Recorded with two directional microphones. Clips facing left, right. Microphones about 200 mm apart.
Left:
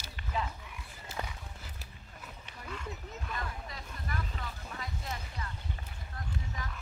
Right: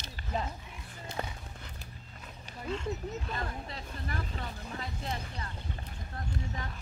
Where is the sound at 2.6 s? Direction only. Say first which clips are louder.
Right 8 dB; 25° right (ahead or behind).